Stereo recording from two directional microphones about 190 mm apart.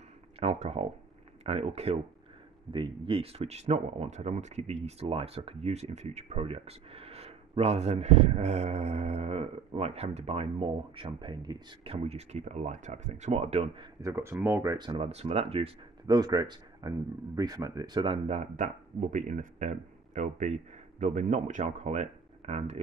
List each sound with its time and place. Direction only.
0.4 s speech: 35° right (ahead or behind)
14.0 s speech: 15° right (ahead or behind); by 22.8 s 35° right (ahead or behind)